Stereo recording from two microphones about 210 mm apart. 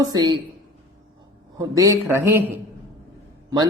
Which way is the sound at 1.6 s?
15° right (ahead or behind).